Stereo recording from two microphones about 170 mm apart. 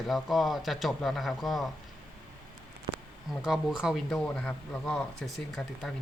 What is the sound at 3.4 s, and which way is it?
Speech, 5° right (ahead or behind).